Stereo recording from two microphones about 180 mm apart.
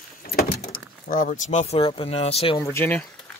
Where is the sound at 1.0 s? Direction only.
45° left (ahead or behind); by 2.6 s 30° left (ahead or behind).